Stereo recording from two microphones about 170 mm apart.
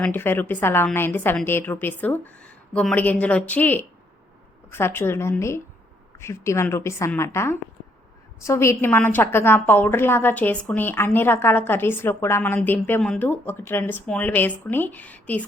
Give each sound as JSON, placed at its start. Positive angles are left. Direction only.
{"t": 0.0, "sound": "a woman's voice", "side_deg": 10}